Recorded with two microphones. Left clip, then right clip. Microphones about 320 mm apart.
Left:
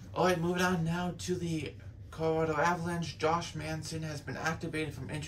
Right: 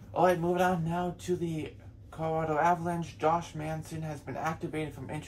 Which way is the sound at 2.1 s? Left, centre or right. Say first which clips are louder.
Even; centre.